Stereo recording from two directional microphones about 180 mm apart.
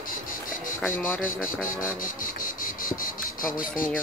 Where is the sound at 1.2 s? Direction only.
50° left (ahead or behind).